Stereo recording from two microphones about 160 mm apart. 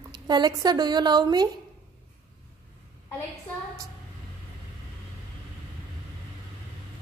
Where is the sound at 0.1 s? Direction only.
25° right (ahead or behind).